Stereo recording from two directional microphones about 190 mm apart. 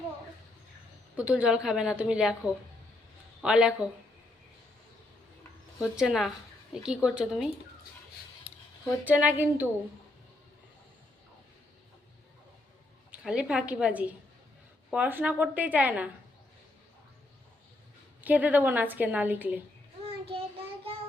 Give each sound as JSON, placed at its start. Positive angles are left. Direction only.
{"t": 1.1, "sound": "a woman's voice", "side_deg": -5}
{"t": 5.8, "sound": "a woman's voice", "side_deg": -5}
{"t": 9.0, "sound": "a woman's voice", "side_deg": -10}
{"t": 13.1, "sound": "a woman's voice", "side_deg": -5}
{"t": 18.2, "sound": "a woman's voice", "side_deg": -10}
{"t": 20.1, "sound": "child singing", "side_deg": -30}